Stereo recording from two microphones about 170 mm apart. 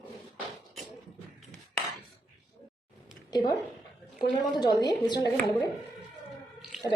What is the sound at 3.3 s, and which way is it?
Speech, 25° left (ahead or behind).